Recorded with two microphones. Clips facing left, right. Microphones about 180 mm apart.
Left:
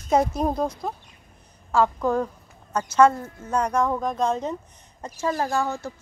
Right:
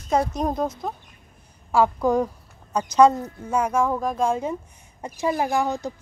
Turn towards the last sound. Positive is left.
turn(degrees=-15)  # may be behind; listen again after turning